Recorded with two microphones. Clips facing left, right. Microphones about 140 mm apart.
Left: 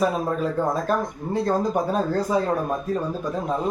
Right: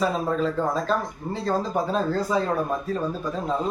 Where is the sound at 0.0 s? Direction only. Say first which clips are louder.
Left 1 dB; 10° left (ahead or behind).